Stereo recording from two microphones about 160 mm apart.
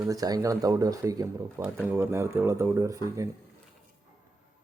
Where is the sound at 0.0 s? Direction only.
20° right (ahead or behind).